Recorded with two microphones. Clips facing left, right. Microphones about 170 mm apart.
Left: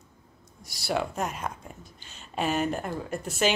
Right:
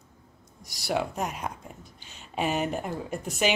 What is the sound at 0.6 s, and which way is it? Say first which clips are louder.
Speech: even; 15° right (ahead or behind).